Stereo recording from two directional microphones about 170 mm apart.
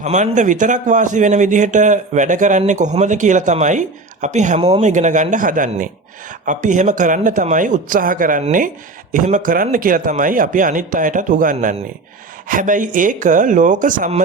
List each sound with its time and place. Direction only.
0.0 s a man's voice: 45° right (ahead or behind)